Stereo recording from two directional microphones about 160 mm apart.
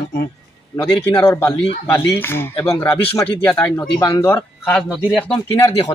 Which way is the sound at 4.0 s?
20° left (ahead or behind).